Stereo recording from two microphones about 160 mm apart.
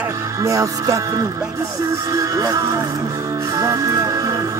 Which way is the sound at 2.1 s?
20° right (ahead or behind).